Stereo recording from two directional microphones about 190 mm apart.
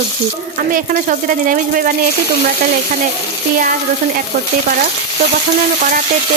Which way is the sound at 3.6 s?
50° right (ahead or behind).